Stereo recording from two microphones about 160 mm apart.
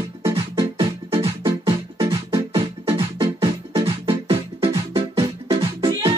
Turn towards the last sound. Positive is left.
turn(degrees=-25)  # may be behind; listen again after turning